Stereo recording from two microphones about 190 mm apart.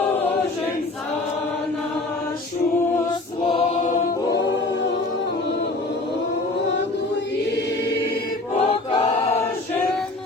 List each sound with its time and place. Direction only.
3.1 s mantra: 25° left (ahead or behind)
8.5 s choir: 30° left (ahead or behind)